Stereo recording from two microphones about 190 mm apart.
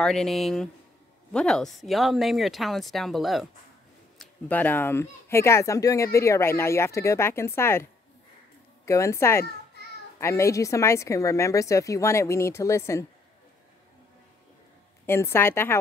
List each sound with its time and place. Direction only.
0.0 s speech: centre (ahead or behind)
8.8 s speech: 15° left (ahead or behind)
15.0 s speech: 15° left (ahead or behind)